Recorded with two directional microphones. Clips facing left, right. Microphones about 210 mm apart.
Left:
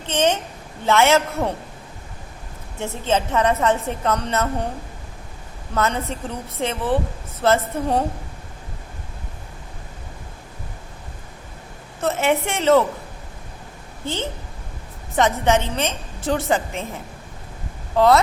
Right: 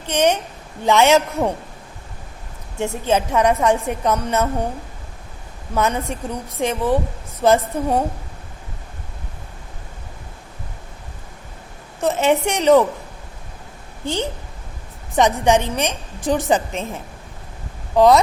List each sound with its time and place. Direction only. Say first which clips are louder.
0.1 s a woman's voice: right 2 dB; 10° right (ahead or behind)
2.7 s a woman's voice: right 3 dB; 15° right (ahead or behind)
5.7 s a woman's voice: right 2 dB; 15° right (ahead or behind)
11.9 s a woman's voice: right 3 dB; 15° right (ahead or behind)
14.0 s a woman's voice: right 3 dB; 15° right (ahead or behind)